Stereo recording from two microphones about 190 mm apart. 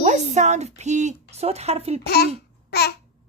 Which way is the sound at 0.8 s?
35° right (ahead or behind).